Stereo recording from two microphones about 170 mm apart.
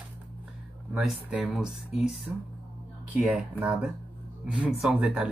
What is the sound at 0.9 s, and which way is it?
Speech, 5° right (ahead or behind).